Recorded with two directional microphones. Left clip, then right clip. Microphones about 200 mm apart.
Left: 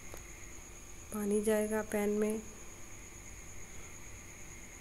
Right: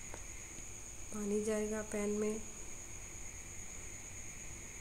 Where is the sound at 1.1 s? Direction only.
20° left (ahead or behind).